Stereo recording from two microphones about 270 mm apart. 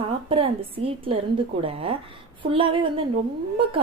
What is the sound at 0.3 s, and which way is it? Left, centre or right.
Speech, centre.